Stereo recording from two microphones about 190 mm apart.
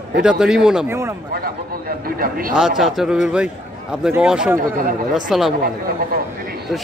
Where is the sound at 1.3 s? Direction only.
50° right (ahead or behind).